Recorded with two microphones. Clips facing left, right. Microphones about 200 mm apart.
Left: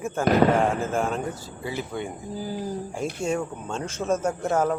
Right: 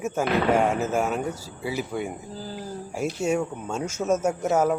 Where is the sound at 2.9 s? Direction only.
10° right (ahead or behind).